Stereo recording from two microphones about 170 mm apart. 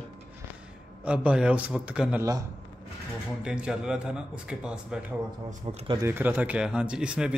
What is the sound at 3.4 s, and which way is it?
A man's voice, 5° right (ahead or behind).